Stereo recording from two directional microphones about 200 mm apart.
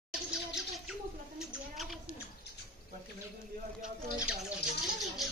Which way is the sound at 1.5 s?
5° right (ahead or behind).